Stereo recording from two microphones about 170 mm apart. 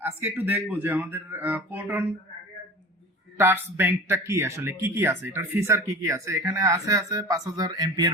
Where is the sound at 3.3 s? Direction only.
15° right (ahead or behind).